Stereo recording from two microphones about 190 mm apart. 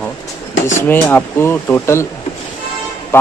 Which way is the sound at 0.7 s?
10° left (ahead or behind).